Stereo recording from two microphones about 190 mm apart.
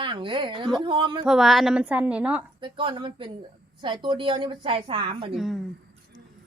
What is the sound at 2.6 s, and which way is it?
Speech, 25° right (ahead or behind).